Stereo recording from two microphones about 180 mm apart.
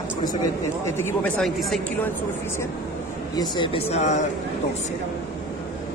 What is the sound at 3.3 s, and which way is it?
Speech, 25° left (ahead or behind).